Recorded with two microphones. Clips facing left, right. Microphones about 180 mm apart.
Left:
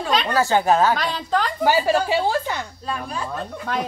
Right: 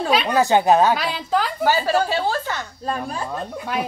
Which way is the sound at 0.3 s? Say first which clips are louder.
Right 2 dB; 20° right (ahead or behind).